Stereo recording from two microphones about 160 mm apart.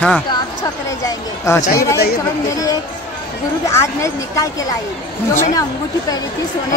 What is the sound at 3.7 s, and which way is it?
Speech, 20° left (ahead or behind).